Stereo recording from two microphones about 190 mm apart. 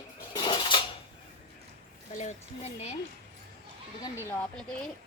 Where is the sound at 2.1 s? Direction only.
40° left (ahead or behind).